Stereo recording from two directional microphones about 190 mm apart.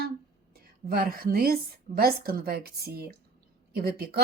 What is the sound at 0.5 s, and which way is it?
A woman's voice, 55° right (ahead or behind).